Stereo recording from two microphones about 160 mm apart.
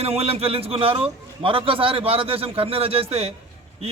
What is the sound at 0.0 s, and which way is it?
A man's voice, 40° right (ahead or behind).